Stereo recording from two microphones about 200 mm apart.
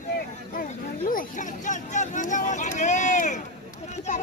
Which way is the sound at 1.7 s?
40° left (ahead or behind).